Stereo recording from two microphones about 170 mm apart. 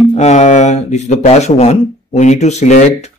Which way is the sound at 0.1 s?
40° left (ahead or behind).